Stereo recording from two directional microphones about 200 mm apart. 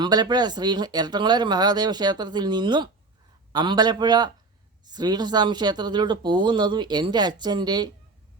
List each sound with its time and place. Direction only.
0.0 s speech: 20° right (ahead or behind)